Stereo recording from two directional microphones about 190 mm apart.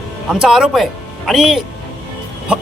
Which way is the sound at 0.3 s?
5° right (ahead or behind).